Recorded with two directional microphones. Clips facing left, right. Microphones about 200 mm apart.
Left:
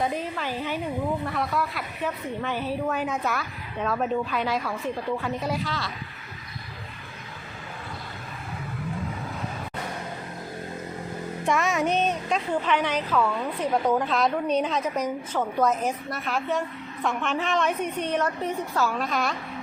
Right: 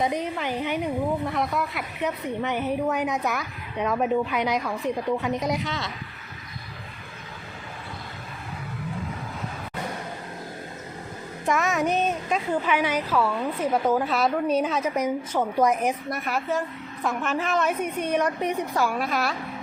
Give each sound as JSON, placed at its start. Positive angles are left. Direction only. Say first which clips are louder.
{"t": 0.0, "sound": "a woman's voice", "louder": "right 2 dB", "side_deg": -15}
{"t": 11.4, "sound": "a woman's voice", "louder": "right 1 dB", "side_deg": 0}